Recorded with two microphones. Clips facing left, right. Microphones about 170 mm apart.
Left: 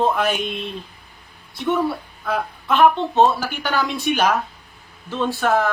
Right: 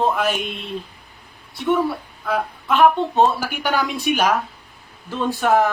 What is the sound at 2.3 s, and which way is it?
Music, 5° right (ahead or behind).